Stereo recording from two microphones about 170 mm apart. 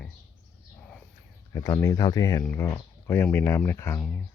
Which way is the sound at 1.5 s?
15° left (ahead or behind).